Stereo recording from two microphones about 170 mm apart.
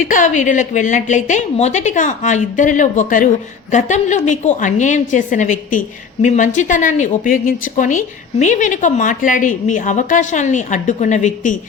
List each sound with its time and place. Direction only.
0.0 s a woman's voice: 50° left (ahead or behind)